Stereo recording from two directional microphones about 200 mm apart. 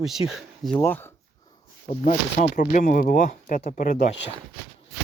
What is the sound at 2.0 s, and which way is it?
Speech, 40° left (ahead or behind).